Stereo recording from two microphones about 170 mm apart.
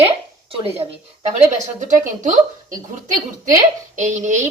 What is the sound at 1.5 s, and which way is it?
Speech, 45° right (ahead or behind).